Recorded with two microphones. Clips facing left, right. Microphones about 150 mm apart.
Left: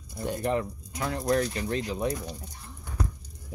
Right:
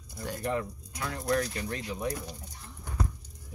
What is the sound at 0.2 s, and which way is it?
Speech, 20° left (ahead or behind).